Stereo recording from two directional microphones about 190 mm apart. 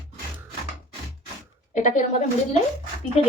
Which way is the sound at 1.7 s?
40° left (ahead or behind).